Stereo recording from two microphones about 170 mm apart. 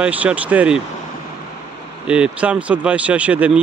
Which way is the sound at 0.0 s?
10° right (ahead or behind).